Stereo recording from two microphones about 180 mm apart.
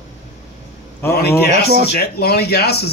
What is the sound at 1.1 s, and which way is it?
Speech, 60° left (ahead or behind).